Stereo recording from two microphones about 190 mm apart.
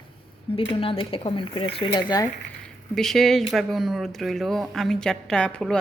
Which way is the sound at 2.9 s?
Centre (ahead or behind).